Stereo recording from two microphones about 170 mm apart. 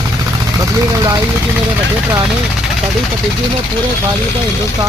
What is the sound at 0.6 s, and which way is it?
Speech, 20° right (ahead or behind).